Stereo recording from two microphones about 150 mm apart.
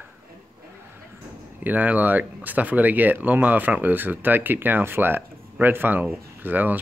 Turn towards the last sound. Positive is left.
turn(degrees=-10)  # may be behind; listen again after turning